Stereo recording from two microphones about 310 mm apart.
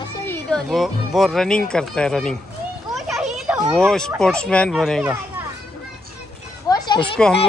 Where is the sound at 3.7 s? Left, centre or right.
Centre.